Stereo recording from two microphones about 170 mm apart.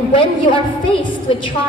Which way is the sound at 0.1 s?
30° left (ahead or behind).